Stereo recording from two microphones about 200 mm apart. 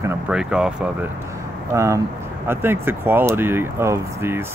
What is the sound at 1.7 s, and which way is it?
Speech, 15° right (ahead or behind).